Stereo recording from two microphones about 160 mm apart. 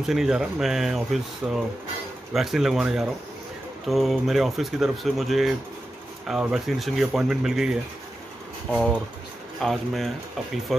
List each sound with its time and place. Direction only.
0.0 s speech: centre (ahead or behind)
9.6 s speech: centre (ahead or behind)